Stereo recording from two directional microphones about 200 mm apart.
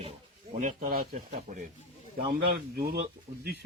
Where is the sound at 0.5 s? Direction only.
45° right (ahead or behind).